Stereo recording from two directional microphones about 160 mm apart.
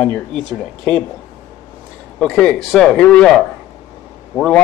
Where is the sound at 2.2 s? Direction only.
5° left (ahead or behind).